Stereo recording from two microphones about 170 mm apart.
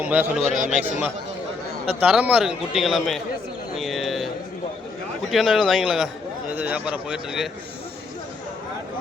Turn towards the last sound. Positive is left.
turn(degrees=0)  # may be behind; listen again after turning